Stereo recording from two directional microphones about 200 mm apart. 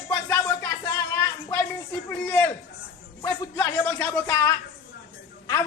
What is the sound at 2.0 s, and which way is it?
Speech, 10° left (ahead or behind).